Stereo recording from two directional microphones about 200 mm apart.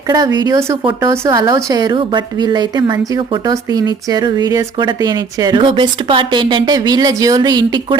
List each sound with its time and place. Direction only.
0.1 s speech: 20° right (ahead or behind)